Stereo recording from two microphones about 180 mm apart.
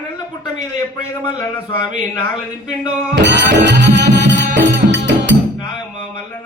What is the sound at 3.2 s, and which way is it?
Music, 75° right (ahead or behind).